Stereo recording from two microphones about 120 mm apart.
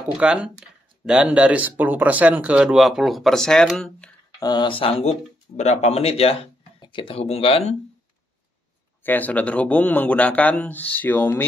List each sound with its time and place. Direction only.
0.2 s speech: 10° right (ahead or behind)
4.4 s speech: 35° left (ahead or behind)
5.6 s speech: 70° left (ahead or behind)
6.8 s speech: 45° left (ahead or behind)
9.0 s speech: 15° left (ahead or behind)